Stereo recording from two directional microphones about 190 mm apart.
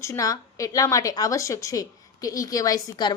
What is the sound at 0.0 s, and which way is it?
A woman's voice, 15° left (ahead or behind).